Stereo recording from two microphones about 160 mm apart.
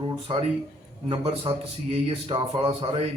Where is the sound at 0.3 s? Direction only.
30° right (ahead or behind).